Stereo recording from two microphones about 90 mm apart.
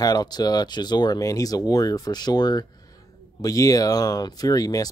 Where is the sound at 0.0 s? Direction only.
50° left (ahead or behind).